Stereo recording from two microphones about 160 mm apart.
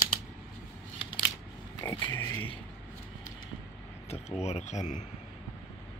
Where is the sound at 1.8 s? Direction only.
20° left (ahead or behind).